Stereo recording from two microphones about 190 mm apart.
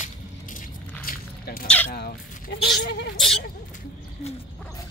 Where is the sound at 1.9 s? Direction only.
55° left (ahead or behind).